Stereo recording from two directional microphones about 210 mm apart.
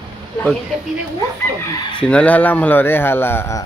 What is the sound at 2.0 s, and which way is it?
Speech, 5° left (ahead or behind).